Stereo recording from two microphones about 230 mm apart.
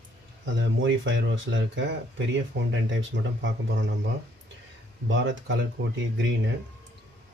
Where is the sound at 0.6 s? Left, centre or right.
Right.